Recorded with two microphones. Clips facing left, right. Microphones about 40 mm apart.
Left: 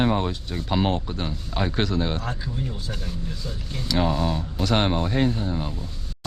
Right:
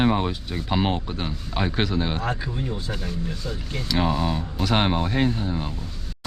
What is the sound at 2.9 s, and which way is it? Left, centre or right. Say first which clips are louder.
Speech: right 3 dB; centre.